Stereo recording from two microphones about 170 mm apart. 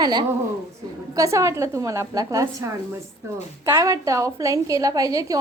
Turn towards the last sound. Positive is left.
turn(degrees=-20)  # may be behind; listen again after turning